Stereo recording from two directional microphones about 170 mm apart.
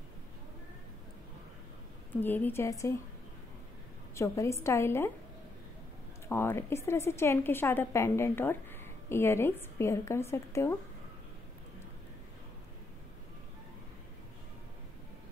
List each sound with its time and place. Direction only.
2.1 s speech: 10° left (ahead or behind)
4.1 s a woman's voice: 15° left (ahead or behind)
6.2 s speech: 15° left (ahead or behind)